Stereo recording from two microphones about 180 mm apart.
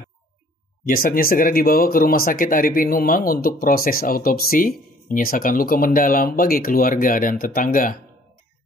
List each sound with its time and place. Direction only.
0.8 s speech: 55° left (ahead or behind)